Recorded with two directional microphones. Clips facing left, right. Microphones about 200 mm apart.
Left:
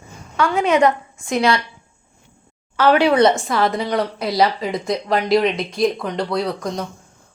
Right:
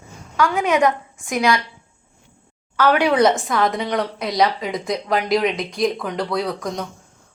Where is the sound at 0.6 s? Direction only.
15° right (ahead or behind).